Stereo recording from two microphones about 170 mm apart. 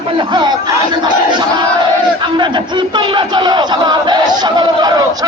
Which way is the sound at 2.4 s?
30° right (ahead or behind).